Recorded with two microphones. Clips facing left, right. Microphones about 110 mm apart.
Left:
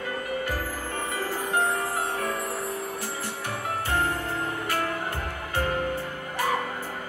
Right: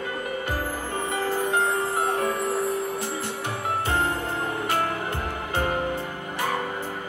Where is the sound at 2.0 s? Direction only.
20° right (ahead or behind).